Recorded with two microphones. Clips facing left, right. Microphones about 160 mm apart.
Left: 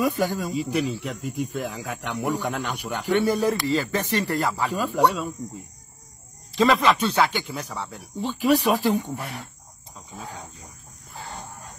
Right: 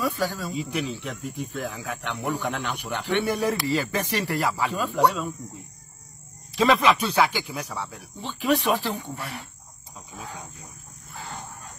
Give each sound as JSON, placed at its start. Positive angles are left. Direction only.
{"t": 0.2, "sound": "speech", "side_deg": 15}
{"t": 0.5, "sound": "speech", "side_deg": 0}
{"t": 3.3, "sound": "speech", "side_deg": 0}
{"t": 6.5, "sound": "speech", "side_deg": 0}
{"t": 8.8, "sound": "speech", "side_deg": 15}